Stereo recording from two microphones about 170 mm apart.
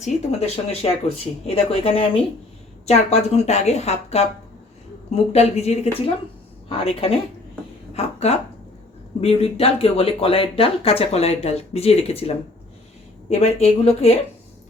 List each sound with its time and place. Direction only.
0.0 s a woman's voice: 40° left (ahead or behind)
13.4 s speech: 40° left (ahead or behind)